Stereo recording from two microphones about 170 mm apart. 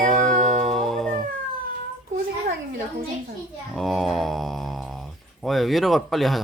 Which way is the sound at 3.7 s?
Centre (ahead or behind).